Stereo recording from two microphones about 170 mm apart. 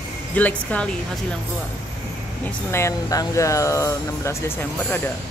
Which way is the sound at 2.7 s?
15° left (ahead or behind).